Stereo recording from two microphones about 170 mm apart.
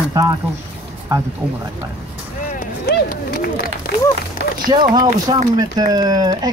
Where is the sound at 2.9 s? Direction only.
60° left (ahead or behind).